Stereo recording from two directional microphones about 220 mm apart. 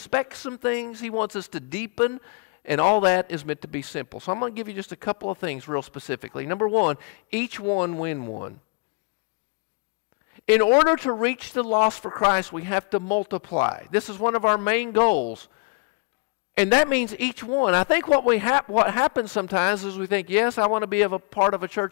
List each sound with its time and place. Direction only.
0.0 s a man's voice: 10° left (ahead or behind)
10.4 s a man's voice: 15° left (ahead or behind)
13.9 s a man's voice: 10° left (ahead or behind)
16.5 s a man's voice: 15° left (ahead or behind)